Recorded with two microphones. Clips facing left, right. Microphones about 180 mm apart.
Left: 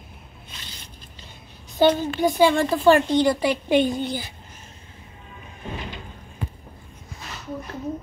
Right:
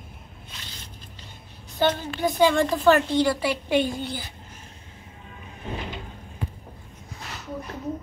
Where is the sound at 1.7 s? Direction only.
10° left (ahead or behind).